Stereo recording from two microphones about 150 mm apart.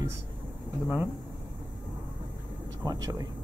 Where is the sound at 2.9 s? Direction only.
25° right (ahead or behind).